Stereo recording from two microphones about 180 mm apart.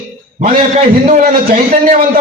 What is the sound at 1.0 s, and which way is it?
A man's voice, 45° right (ahead or behind).